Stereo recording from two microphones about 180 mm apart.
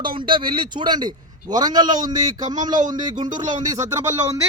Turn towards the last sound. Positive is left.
turn(degrees=-20)  # may be behind; listen again after turning